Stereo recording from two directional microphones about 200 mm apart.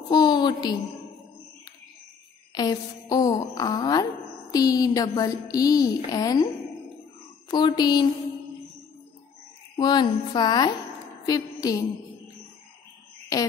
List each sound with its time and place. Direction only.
0.1 s speech: 20° left (ahead or behind)
2.5 s a woman's voice: 20° left (ahead or behind)
7.4 s a woman's voice: 20° left (ahead or behind)
9.8 s a woman's voice: 20° left (ahead or behind)
13.3 s speech: 15° left (ahead or behind)